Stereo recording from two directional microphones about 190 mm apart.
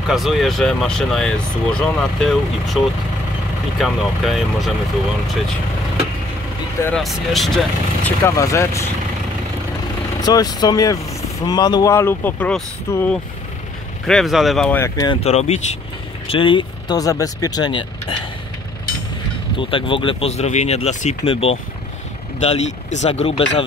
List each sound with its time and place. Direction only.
0.1 s speech: centre (ahead or behind)
3.8 s speech: centre (ahead or behind)
7.0 s speech: centre (ahead or behind); by 8.8 s 15° left (ahead or behind)
10.2 s speech: 20° left (ahead or behind)
15.2 s speech: 35° left (ahead or behind)
19.6 s speech: 25° left (ahead or behind)